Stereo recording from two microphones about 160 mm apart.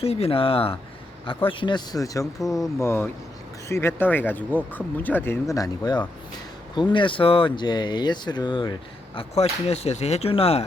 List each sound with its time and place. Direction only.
0.0 s speech: 40° left (ahead or behind)
9.3 s speech: 40° left (ahead or behind)